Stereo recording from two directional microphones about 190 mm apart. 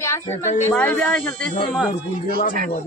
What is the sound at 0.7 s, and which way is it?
Speech, 15° left (ahead or behind).